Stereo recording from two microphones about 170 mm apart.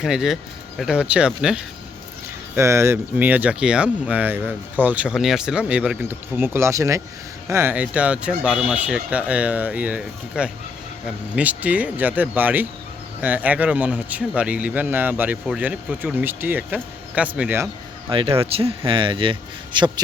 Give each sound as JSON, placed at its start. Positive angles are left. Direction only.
{"t": 0.0, "sound": "speech", "side_deg": -5}
{"t": 2.6, "sound": "speech", "side_deg": -15}
{"t": 18.1, "sound": "speech", "side_deg": -30}